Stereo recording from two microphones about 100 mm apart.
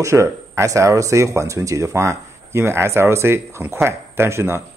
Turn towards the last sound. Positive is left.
turn(degrees=-30)  # may be behind; listen again after turning